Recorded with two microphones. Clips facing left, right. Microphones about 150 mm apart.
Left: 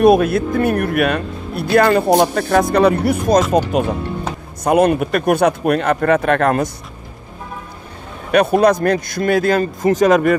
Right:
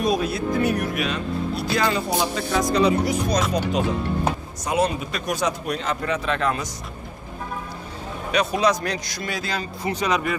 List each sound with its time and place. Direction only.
0.0 s a man's voice: 60° left (ahead or behind)
8.3 s a man's voice: 55° left (ahead or behind)